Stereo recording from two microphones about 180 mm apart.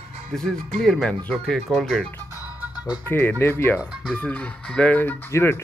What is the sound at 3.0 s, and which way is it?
Speech, 10° left (ahead or behind).